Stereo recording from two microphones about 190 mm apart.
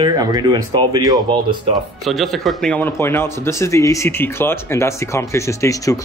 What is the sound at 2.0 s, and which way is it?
A man's voice, centre (ahead or behind).